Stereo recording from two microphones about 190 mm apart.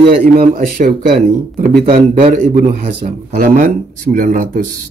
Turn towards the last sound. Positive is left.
turn(degrees=-45)  # may be behind; listen again after turning